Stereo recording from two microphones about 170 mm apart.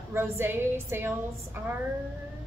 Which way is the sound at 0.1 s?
15° right (ahead or behind).